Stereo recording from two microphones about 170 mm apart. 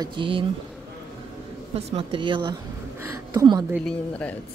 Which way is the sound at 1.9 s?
35° right (ahead or behind).